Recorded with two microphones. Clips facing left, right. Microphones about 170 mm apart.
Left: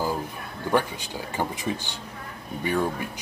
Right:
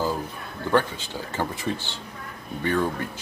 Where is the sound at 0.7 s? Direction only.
15° left (ahead or behind).